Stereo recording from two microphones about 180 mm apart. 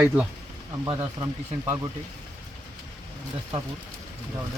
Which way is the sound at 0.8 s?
20° right (ahead or behind).